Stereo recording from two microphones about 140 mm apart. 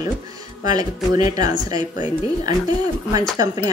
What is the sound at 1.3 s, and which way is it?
A woman's voice, 30° right (ahead or behind).